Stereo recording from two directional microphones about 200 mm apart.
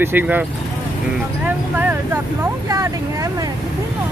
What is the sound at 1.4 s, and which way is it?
Vehicle, 10° right (ahead or behind).